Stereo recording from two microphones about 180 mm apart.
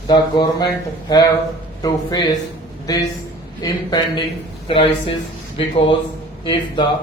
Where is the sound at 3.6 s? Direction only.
20° left (ahead or behind).